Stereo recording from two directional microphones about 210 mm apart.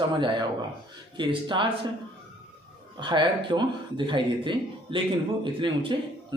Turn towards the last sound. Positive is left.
turn(degrees=-25)  # may be behind; listen again after turning